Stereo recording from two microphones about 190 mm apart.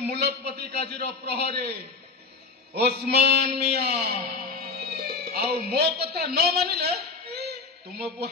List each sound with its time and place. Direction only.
0.0 s a man's voice: 60° right (ahead or behind)
4.7 s music: 60° right (ahead or behind)